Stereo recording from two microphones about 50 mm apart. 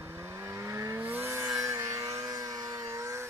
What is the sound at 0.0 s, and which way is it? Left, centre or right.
Vehicle, right.